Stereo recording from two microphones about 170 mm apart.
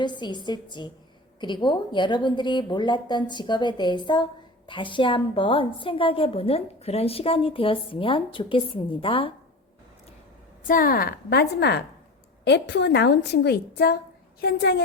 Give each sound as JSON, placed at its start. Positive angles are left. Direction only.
{"t": 0.0, "sound": "a woman's voice", "side_deg": 25}
{"t": 10.7, "sound": "a woman's voice", "side_deg": 55}